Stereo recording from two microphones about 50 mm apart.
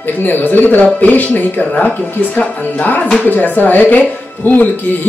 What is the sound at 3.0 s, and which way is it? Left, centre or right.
Speech, centre.